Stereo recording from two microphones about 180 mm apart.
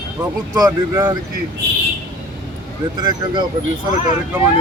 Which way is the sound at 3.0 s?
25° right (ahead or behind).